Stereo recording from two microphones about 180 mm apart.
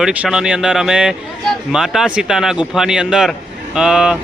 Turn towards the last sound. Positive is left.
turn(degrees=-5)  # may be behind; listen again after turning